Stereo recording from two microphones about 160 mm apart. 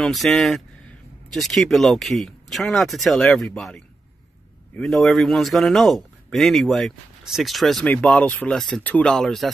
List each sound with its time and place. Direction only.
0.0 s speech: centre (ahead or behind)